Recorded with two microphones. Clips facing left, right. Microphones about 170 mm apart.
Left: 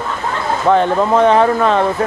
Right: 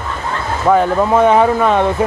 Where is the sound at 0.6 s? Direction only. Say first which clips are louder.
Right 1 dB; 5° right (ahead or behind).